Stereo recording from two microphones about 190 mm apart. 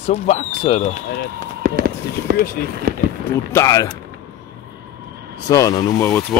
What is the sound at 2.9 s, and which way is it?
Run, 50° right (ahead or behind).